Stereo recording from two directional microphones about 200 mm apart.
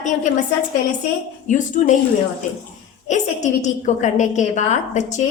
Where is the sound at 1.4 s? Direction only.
40° left (ahead or behind).